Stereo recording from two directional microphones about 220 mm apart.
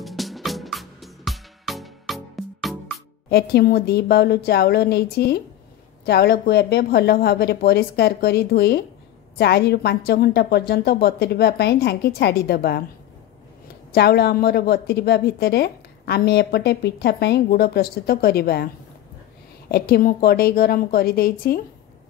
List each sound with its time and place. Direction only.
0.0 s music: centre (ahead or behind)
3.3 s a woman's voice: 45° left (ahead or behind)
13.9 s a woman's voice: 45° left (ahead or behind)
19.7 s a woman's voice: 40° left (ahead or behind)